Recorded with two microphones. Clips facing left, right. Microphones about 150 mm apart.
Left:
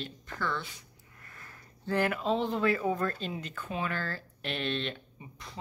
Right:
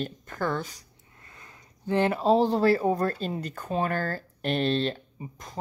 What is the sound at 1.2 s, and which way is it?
Speech, 20° right (ahead or behind).